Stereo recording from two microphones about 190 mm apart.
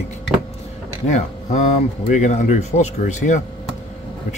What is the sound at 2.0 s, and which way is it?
Speech, 40° left (ahead or behind).